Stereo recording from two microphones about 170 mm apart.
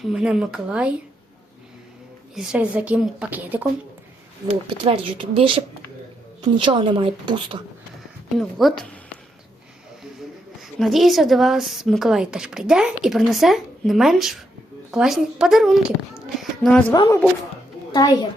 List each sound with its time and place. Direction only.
0.0 s a woman's voice: 5° right (ahead or behind)
2.3 s a woman's voice: 5° right (ahead or behind)
4.4 s a woman's voice: 30° right (ahead or behind)
8.4 s a woman's voice: centre (ahead or behind)
10.6 s a woman's voice: centre (ahead or behind)
16.9 s a woman's voice: 25° left (ahead or behind)